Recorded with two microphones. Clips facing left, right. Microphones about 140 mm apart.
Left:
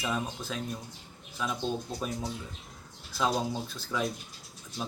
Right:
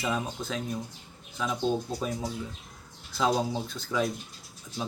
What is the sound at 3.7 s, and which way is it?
Speech, 5° left (ahead or behind).